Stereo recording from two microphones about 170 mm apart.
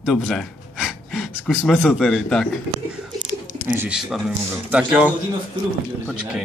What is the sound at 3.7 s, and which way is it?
Speech, 5° right (ahead or behind).